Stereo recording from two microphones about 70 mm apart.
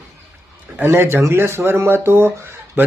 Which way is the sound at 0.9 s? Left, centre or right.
Right.